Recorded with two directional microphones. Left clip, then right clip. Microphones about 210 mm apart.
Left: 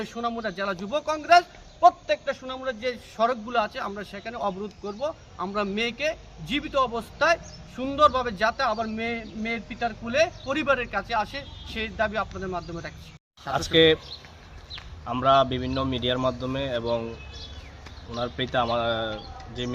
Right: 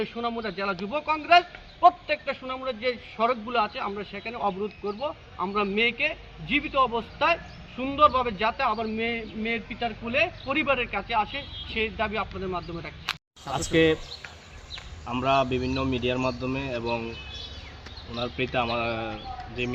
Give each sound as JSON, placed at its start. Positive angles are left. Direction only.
{"t": 0.0, "sound": "a man's voice", "side_deg": 20}
{"t": 9.0, "sound": "speech", "side_deg": 55}
{"t": 9.8, "sound": "a man's voice", "side_deg": 15}
{"t": 15.0, "sound": "speech", "side_deg": 20}
{"t": 18.1, "sound": "speech", "side_deg": 20}